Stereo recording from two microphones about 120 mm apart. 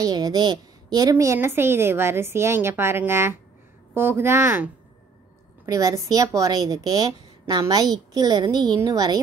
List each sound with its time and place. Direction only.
0.0 s a woman's voice: 30° right (ahead or behind)
5.7 s a woman's voice: 30° right (ahead or behind)